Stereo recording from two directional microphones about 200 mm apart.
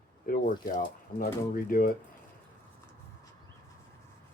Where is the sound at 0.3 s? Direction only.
45° left (ahead or behind).